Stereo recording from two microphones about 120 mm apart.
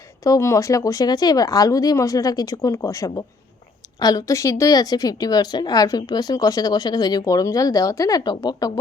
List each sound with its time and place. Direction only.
0.3 s a woman's voice: 25° left (ahead or behind)